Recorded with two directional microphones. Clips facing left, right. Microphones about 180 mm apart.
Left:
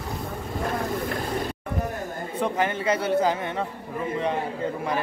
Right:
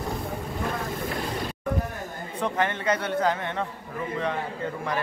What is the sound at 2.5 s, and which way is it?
Speech, 10° left (ahead or behind).